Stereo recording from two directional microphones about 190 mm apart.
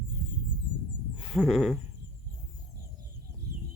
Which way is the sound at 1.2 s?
5° right (ahead or behind).